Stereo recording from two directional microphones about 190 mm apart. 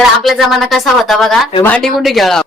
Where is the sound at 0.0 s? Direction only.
Centre (ahead or behind).